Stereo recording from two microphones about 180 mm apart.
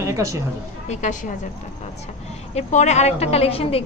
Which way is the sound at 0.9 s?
40° left (ahead or behind).